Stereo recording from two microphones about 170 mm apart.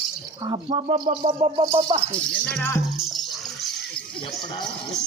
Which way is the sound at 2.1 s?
5° left (ahead or behind).